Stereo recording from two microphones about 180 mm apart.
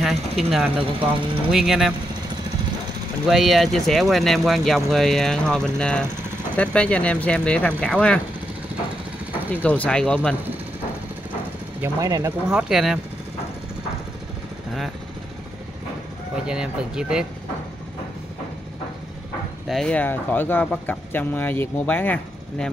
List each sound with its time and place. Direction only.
0.0 s speech: centre (ahead or behind)
3.3 s speech: centre (ahead or behind)
9.5 s speech: 10° left (ahead or behind)
11.8 s speech: 15° right (ahead or behind)
12.4 s speech: 5° right (ahead or behind)
16.4 s speech: 5° right (ahead or behind)
19.7 s speech: 5° left (ahead or behind)